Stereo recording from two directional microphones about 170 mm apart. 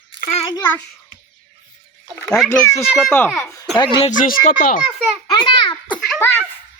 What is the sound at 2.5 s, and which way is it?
Speech, 15° left (ahead or behind).